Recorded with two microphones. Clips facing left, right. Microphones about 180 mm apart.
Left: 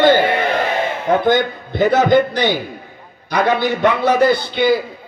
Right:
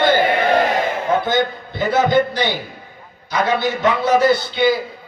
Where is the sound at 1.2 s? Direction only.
55° left (ahead or behind).